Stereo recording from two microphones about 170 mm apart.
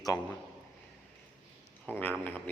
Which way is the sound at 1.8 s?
10° left (ahead or behind).